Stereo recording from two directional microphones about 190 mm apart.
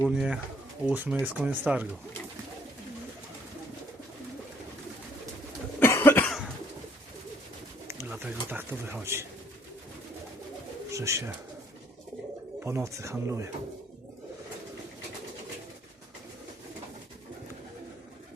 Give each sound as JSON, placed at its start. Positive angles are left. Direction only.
{"t": 0.0, "sound": "speech", "side_deg": -5}
{"t": 5.8, "sound": "cough", "side_deg": 10}
{"t": 7.9, "sound": "speech", "side_deg": -10}
{"t": 10.9, "sound": "speech", "side_deg": -15}
{"t": 12.6, "sound": "speech", "side_deg": -15}